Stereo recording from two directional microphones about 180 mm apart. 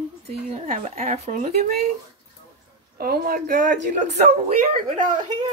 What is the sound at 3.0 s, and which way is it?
Speech, 55° right (ahead or behind).